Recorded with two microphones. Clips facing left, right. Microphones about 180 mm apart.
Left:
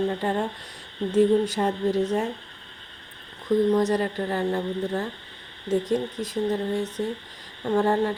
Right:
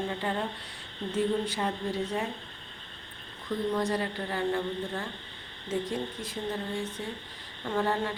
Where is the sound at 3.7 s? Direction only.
45° left (ahead or behind).